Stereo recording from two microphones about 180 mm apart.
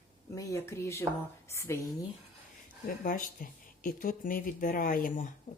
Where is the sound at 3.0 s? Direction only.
50° left (ahead or behind).